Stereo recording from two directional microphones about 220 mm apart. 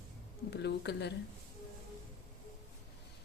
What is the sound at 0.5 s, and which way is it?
Speech, 50° left (ahead or behind).